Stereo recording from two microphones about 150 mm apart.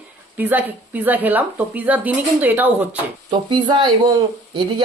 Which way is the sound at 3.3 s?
30° right (ahead or behind).